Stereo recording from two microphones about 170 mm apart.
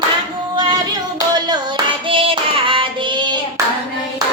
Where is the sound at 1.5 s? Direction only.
30° right (ahead or behind).